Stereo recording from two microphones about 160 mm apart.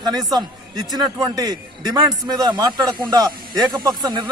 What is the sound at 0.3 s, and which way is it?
A man's voice, 25° right (ahead or behind).